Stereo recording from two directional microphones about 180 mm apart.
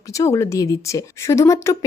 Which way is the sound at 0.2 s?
15° left (ahead or behind).